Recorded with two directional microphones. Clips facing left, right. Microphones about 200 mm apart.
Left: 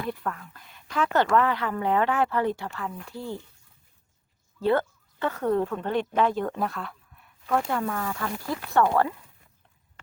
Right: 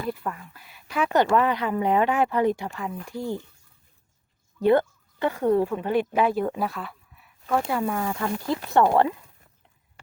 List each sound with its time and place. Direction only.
0.1 s speech: 5° right (ahead or behind)
4.6 s speech: 15° right (ahead or behind)